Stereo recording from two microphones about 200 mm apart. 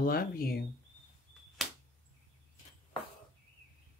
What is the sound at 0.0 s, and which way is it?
Speech, 45° left (ahead or behind).